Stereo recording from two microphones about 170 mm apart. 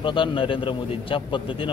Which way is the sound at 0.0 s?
30° left (ahead or behind).